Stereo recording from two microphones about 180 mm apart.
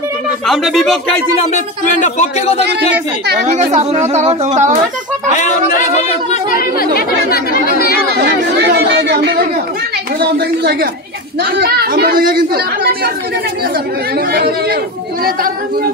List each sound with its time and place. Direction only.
0.5 s speech: centre (ahead or behind)
1.5 s speech: 40° left (ahead or behind)
2.9 s a woman's voice: 70° right (ahead or behind)
3.4 s speech: 35° right (ahead or behind)
6.3 s speech: 55° left (ahead or behind)
8.2 s chatter: 70° right (ahead or behind)
10.2 s speech: 65° right (ahead or behind)